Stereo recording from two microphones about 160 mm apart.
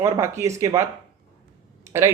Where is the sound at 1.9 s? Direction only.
15° right (ahead or behind).